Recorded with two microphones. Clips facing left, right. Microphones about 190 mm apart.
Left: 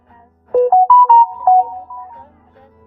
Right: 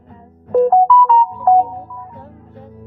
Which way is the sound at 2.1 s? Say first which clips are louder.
Right 5 dB; 35° right (ahead or behind).